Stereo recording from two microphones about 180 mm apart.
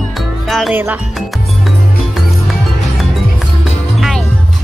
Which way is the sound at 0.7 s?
10° right (ahead or behind).